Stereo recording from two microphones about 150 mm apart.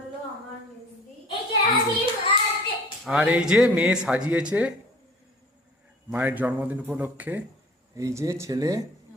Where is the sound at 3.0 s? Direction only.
5° right (ahead or behind).